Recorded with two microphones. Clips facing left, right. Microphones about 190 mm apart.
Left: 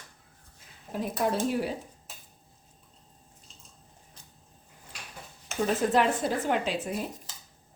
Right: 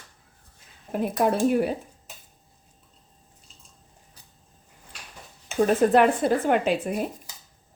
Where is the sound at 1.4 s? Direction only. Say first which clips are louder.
Right 7 dB; 55° right (ahead or behind).